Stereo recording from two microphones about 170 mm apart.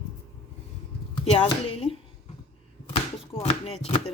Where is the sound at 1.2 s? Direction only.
40° left (ahead or behind).